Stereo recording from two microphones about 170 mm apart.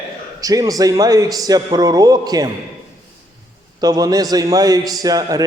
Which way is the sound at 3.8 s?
20° right (ahead or behind).